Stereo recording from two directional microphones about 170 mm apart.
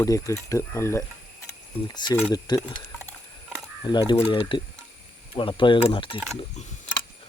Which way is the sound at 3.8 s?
25° left (ahead or behind).